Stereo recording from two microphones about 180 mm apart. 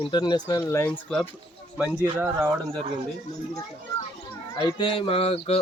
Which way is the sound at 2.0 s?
15° right (ahead or behind).